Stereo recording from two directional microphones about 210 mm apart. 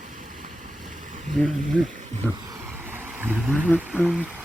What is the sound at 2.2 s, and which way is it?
Vehicle, 10° right (ahead or behind).